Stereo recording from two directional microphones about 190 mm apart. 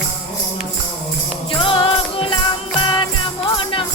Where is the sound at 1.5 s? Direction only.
25° left (ahead or behind).